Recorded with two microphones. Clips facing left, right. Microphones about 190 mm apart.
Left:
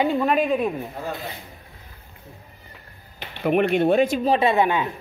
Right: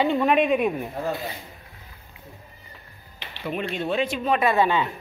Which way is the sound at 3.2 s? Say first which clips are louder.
Left 9 dB; 55° left (ahead or behind).